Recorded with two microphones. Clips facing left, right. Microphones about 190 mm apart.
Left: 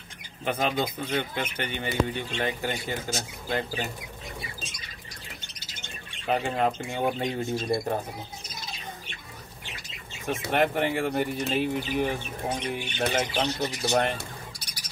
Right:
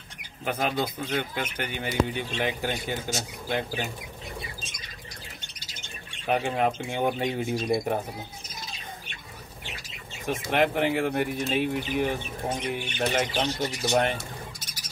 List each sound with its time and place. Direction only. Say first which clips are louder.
0.5 s speech: left 1 dB; 5° right (ahead or behind)
6.2 s speech: right 1 dB; 5° right (ahead or behind)
7.5 s speech: right 1 dB; 15° right (ahead or behind)
10.5 s speech: right 1 dB; 5° right (ahead or behind)